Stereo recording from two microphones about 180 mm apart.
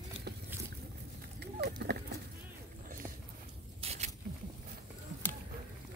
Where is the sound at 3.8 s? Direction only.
35° right (ahead or behind).